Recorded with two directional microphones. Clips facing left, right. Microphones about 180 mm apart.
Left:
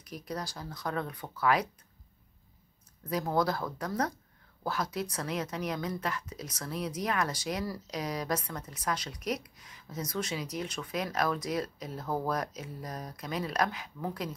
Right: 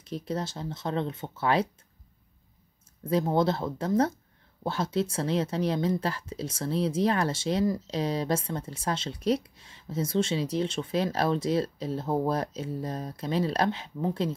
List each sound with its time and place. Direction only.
0.0 s speech: 25° right (ahead or behind)
3.0 s speech: 25° right (ahead or behind)